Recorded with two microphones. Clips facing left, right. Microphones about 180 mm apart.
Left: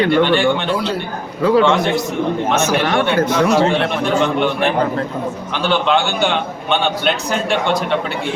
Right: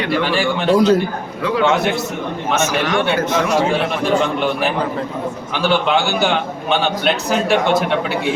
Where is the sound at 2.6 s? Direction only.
35° left (ahead or behind).